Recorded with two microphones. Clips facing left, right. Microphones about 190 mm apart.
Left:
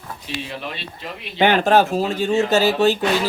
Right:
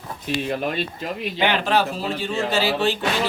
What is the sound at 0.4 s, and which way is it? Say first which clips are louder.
Speech: right 7 dB; 45° right (ahead or behind).